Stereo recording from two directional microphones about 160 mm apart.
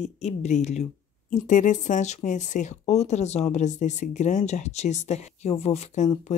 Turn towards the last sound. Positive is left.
turn(degrees=45)  # may be behind; listen again after turning